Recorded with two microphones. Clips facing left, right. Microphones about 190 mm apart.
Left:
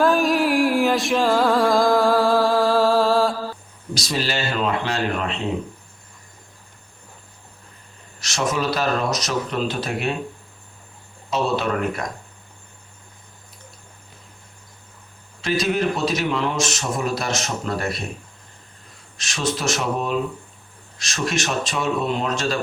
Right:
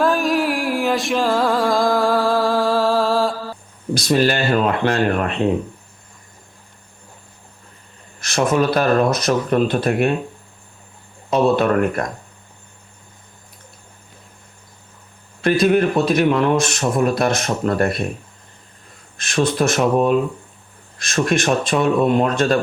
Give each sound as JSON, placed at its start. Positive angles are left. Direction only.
{"t": 0.0, "sound": "music", "side_deg": 0}
{"t": 3.9, "sound": "a man's voice", "side_deg": -55}
{"t": 8.2, "sound": "a man's voice", "side_deg": -55}
{"t": 11.3, "sound": "a man's voice", "side_deg": -55}
{"t": 15.4, "sound": "a man's voice", "side_deg": -55}
{"t": 19.1, "sound": "a man's voice", "side_deg": -55}